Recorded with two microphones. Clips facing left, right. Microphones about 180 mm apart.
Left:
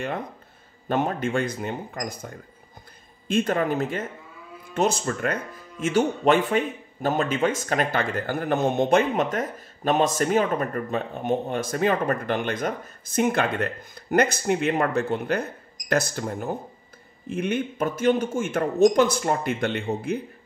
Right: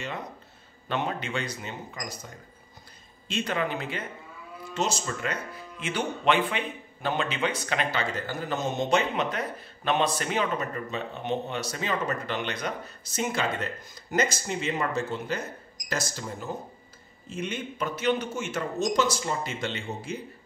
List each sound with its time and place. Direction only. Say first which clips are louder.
0.8 s speech: left 6 dB; 45° left (ahead or behind)
4.7 s speech: left 6 dB; 55° left (ahead or behind)